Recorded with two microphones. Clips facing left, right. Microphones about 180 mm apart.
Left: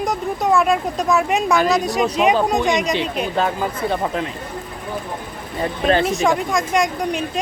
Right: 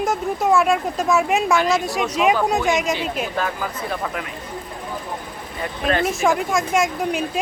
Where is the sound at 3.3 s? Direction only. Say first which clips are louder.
Left 4 dB; 25° left (ahead or behind).